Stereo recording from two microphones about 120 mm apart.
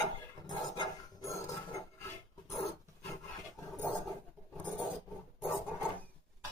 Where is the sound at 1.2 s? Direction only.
25° left (ahead or behind).